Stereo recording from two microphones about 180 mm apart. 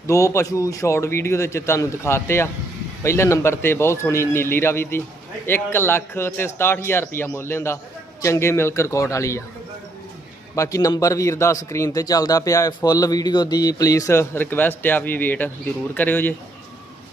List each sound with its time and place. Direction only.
0.1 s a man's voice: 15° left (ahead or behind)
10.5 s a man's voice: 20° left (ahead or behind)